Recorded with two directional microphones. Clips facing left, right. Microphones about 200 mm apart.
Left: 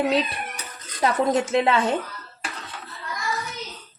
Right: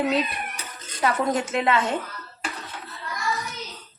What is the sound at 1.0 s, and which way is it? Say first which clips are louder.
Speech: left 2 dB; 30° left (ahead or behind).